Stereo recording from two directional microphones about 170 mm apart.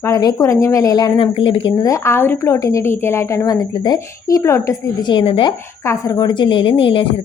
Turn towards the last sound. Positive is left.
turn(degrees=30)  # may be behind; listen again after turning